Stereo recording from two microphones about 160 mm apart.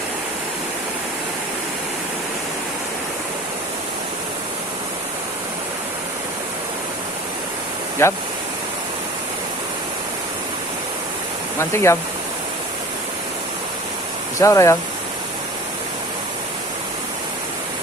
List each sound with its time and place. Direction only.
8.0 s speech: 15° left (ahead or behind)
11.7 s speech: 15° left (ahead or behind)
14.3 s speech: 20° left (ahead or behind)